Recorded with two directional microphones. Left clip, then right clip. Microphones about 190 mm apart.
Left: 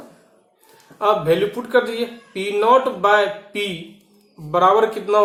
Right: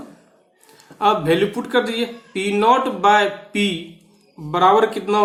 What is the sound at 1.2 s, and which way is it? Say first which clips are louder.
Speech: even; 55° right (ahead or behind).